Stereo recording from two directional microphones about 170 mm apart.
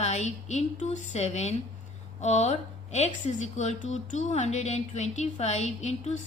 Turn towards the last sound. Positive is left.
turn(degrees=40)  # may be behind; listen again after turning